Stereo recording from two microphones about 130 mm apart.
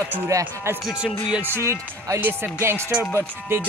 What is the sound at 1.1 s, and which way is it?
Speech, 40° left (ahead or behind).